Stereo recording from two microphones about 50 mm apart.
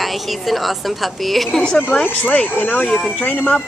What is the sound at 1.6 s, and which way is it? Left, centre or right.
A woman's voice, centre.